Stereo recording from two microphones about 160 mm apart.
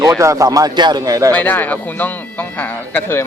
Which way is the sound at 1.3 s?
10° left (ahead or behind).